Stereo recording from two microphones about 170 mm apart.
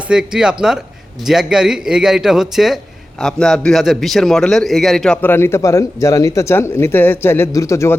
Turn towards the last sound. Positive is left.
turn(degrees=15)  # may be behind; listen again after turning